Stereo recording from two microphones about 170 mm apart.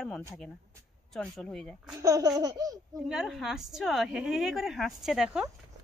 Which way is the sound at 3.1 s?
5° right (ahead or behind).